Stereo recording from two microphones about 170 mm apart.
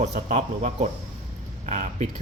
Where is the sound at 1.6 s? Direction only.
45° right (ahead or behind).